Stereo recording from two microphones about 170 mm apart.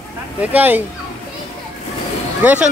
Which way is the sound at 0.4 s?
10° right (ahead or behind).